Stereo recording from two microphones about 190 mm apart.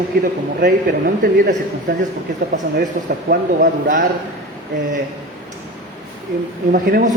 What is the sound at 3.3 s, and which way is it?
Speech, 45° right (ahead or behind).